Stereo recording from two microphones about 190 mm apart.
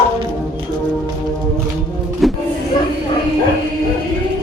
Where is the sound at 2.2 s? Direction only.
Centre (ahead or behind).